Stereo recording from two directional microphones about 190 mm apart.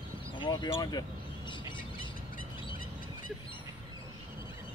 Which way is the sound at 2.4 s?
45° left (ahead or behind).